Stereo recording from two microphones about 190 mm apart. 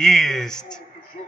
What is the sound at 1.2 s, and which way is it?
Music, 40° left (ahead or behind).